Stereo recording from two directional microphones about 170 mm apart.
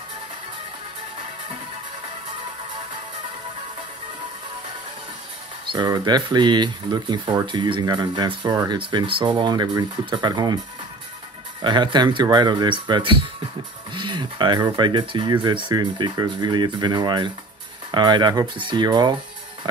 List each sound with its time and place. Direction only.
5.7 s speech: 25° right (ahead or behind)
11.6 s speech: 25° right (ahead or behind)